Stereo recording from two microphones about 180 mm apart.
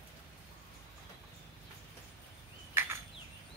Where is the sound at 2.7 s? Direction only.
10° right (ahead or behind).